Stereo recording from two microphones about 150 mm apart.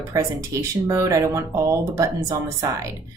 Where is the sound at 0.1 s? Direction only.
20° right (ahead or behind).